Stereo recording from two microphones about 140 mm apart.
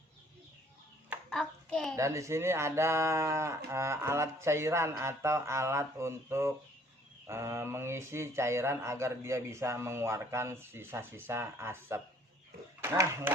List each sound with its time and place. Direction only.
1.3 s hands: 5° left (ahead or behind)
2.0 s speech: 20° right (ahead or behind)